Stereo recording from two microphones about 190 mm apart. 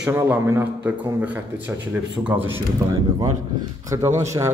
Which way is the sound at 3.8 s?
15° right (ahead or behind).